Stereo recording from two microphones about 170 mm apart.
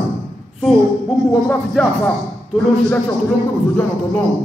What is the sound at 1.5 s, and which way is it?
Music, 10° left (ahead or behind).